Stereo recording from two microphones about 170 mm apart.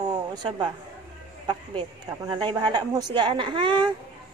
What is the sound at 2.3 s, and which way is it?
Speech, 25° right (ahead or behind).